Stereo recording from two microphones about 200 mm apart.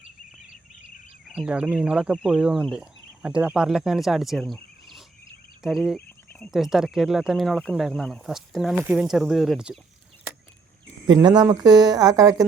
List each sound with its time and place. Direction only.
1.2 s speech: 5° right (ahead or behind)
11.0 s a woman's voice: 20° right (ahead or behind)